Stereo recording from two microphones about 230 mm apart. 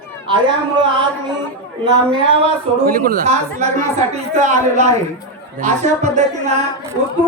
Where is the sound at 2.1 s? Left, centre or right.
Right.